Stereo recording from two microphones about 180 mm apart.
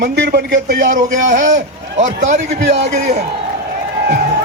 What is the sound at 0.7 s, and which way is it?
A man's voice, 45° right (ahead or behind).